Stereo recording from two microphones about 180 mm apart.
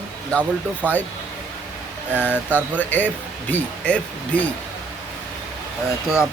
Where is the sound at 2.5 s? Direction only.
10° left (ahead or behind).